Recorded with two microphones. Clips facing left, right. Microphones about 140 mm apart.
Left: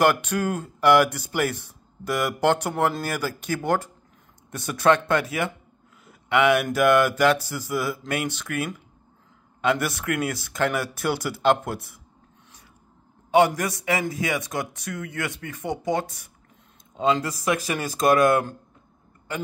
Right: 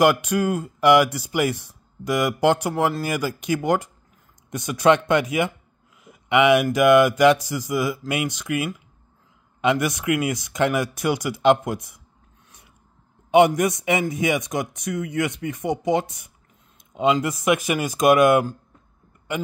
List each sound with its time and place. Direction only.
0.0 s speech: 10° right (ahead or behind)
13.6 s speech: 20° right (ahead or behind)